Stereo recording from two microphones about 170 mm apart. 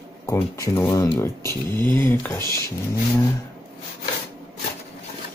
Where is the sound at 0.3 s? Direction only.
20° left (ahead or behind).